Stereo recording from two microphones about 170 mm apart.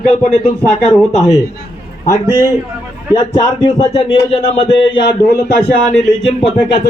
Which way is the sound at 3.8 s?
35° left (ahead or behind).